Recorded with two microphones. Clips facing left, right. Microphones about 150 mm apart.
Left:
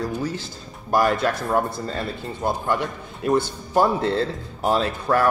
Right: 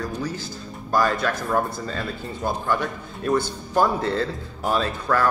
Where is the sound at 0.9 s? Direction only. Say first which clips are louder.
Left 2 dB; 25° left (ahead or behind).